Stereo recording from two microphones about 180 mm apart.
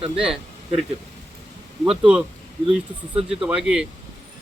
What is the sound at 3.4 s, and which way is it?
Speech, 5° right (ahead or behind).